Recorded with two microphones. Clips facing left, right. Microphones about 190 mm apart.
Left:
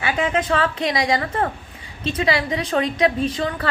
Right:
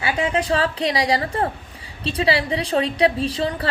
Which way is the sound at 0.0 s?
30° right (ahead or behind).